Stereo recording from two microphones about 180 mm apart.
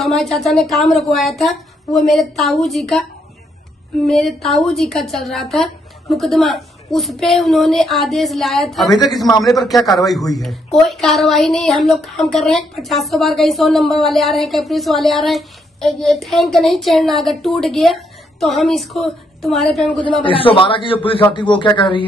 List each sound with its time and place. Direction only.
0.0 s speech: centre (ahead or behind)
20.2 s a man's voice: 30° left (ahead or behind)